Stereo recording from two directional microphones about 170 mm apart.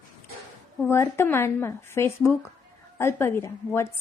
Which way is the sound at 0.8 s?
15° left (ahead or behind).